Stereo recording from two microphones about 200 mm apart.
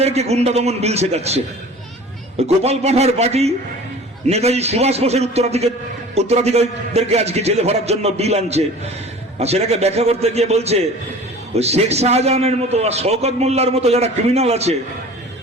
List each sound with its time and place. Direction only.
0.0 s a man's voice: 30° right (ahead or behind)
2.6 s a man's voice: 30° right (ahead or behind)